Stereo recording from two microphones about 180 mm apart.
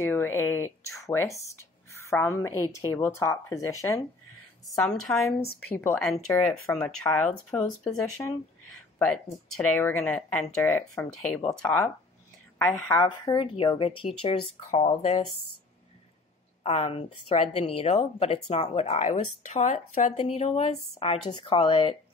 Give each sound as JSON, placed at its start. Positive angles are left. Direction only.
{"t": 0.0, "sound": "a woman's voice", "side_deg": 15}
{"t": 4.6, "sound": "a woman's voice", "side_deg": 0}
{"t": 13.0, "sound": "speech", "side_deg": 25}
{"t": 16.6, "sound": "speech", "side_deg": 35}